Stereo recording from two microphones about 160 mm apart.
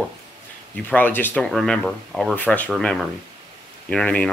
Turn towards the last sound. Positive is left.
turn(degrees=5)  # may be behind; listen again after turning